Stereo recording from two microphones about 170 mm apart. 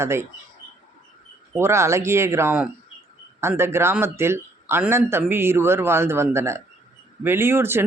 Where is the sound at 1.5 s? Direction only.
15° right (ahead or behind).